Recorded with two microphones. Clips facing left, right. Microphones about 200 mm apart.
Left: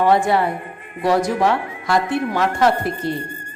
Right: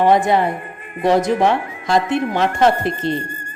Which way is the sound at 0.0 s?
20° right (ahead or behind).